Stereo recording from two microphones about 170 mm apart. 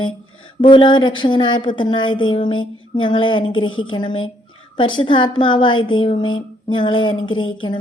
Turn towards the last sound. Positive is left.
turn(degrees=30)  # may be behind; listen again after turning